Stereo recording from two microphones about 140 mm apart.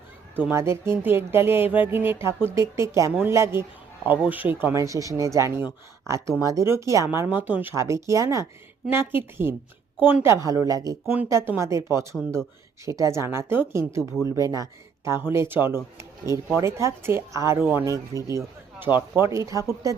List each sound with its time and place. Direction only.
0.3 s speech: 15° right (ahead or behind)
11.0 s speech: 10° right (ahead or behind)